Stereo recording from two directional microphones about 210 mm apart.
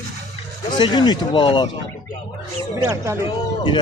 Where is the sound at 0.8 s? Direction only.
20° left (ahead or behind).